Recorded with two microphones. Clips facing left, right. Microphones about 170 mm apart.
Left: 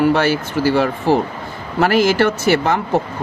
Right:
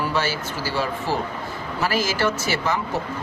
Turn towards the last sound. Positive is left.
turn(degrees=60)  # may be behind; listen again after turning